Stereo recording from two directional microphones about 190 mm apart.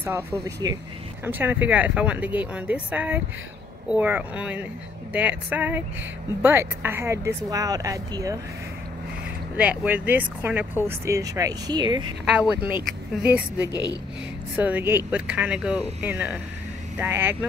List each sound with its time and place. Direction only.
0.0 s speech: 10° right (ahead or behind)
9.6 s speech: 10° right (ahead or behind)
13.2 s speech: 10° right (ahead or behind)
13.7 s a woman's voice: 25° left (ahead or behind)
14.6 s speech: 10° right (ahead or behind)